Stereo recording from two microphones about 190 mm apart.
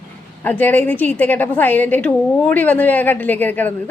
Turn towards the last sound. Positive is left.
turn(degrees=10)  # may be behind; listen again after turning